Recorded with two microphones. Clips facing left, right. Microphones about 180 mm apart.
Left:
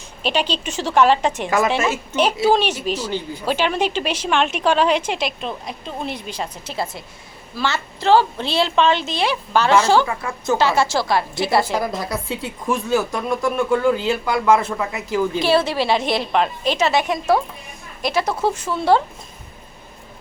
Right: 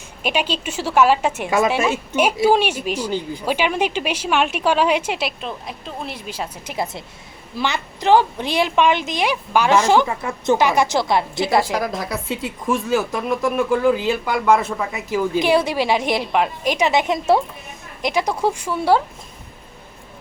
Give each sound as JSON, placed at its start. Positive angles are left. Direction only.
{"t": 0.2, "sound": "speech", "side_deg": -10}
{"t": 6.7, "sound": "a woman's voice", "side_deg": -20}
{"t": 11.8, "sound": "speech", "side_deg": 0}
{"t": 15.4, "sound": "speech", "side_deg": -15}